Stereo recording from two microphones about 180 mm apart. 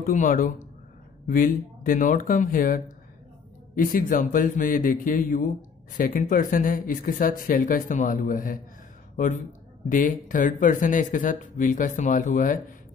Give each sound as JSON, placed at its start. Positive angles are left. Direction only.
{"t": 0.0, "sound": "speech", "side_deg": 50}
{"t": 9.8, "sound": "speech", "side_deg": 50}